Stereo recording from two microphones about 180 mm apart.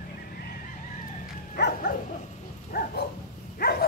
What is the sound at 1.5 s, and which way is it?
Dog, 55° left (ahead or behind).